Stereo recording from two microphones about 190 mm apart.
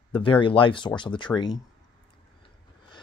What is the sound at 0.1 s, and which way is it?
Speech, 25° left (ahead or behind).